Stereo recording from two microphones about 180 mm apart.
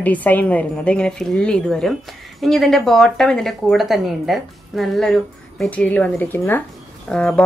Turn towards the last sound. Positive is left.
turn(degrees=5)  # may be behind; listen again after turning